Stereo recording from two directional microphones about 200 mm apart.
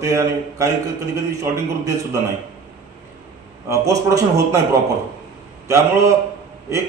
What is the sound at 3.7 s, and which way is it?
Speech, 15° right (ahead or behind).